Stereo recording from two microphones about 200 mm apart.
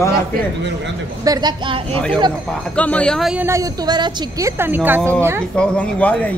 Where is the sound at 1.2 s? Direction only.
20° right (ahead or behind).